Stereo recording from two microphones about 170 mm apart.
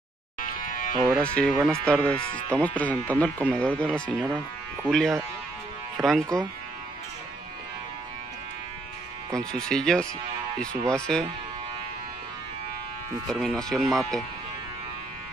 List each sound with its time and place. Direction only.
0.4 s music: 55° left (ahead or behind)
1.1 s speech: 5° left (ahead or behind)
9.3 s speech: 5° left (ahead or behind)
13.3 s speech: 5° left (ahead or behind)